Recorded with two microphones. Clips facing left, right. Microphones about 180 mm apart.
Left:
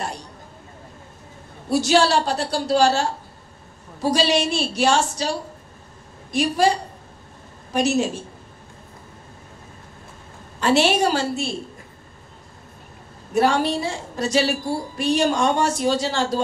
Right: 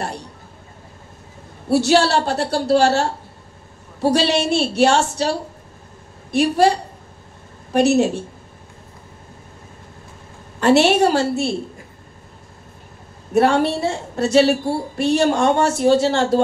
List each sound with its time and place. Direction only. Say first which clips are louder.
0.0 s a woman's voice: right 3 dB; 60° right (ahead or behind)
1.7 s a woman's voice: right 2 dB; 65° right (ahead or behind)
10.6 s a woman's voice: right 4 dB; 65° right (ahead or behind)
13.3 s a woman's voice: right 3 dB; 60° right (ahead or behind)